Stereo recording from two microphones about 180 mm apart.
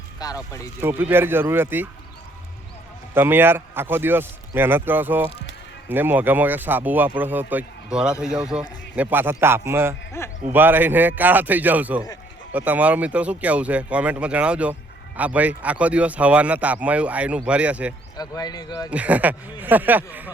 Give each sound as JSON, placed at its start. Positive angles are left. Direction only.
{"t": 0.2, "sound": "speech", "side_deg": 20}
{"t": 0.8, "sound": "speech", "side_deg": -10}
{"t": 3.2, "sound": "speech", "side_deg": -10}
{"t": 10.2, "sound": "a sound", "side_deg": 15}
{"t": 10.5, "sound": "speech", "side_deg": -10}
{"t": 18.2, "sound": "speech", "side_deg": 20}
{"t": 18.9, "sound": "speech", "side_deg": -5}